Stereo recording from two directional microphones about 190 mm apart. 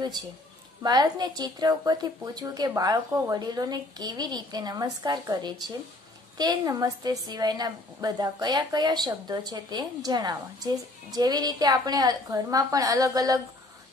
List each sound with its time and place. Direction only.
0.8 s a woman's voice: 20° right (ahead or behind)